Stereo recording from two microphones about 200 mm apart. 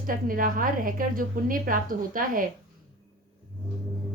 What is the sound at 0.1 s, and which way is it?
A woman's voice, 45° right (ahead or behind).